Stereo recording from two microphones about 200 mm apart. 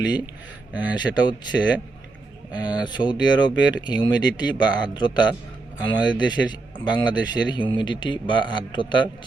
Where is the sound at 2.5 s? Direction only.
20° left (ahead or behind).